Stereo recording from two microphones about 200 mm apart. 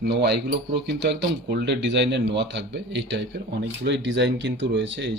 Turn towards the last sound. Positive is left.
turn(degrees=-60)  # may be behind; listen again after turning